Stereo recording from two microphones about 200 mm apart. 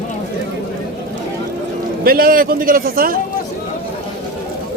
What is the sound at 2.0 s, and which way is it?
A man's voice, 45° right (ahead or behind).